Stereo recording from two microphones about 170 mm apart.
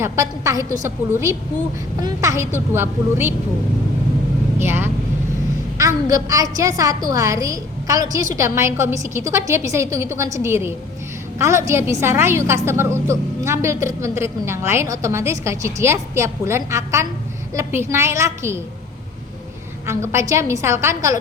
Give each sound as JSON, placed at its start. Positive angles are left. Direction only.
{"t": 0.0, "sound": "a woman's voice", "side_deg": -20}
{"t": 4.6, "sound": "a woman's voice", "side_deg": -15}
{"t": 6.1, "sound": "a woman's voice", "side_deg": -20}
{"t": 19.9, "sound": "a woman's voice", "side_deg": -15}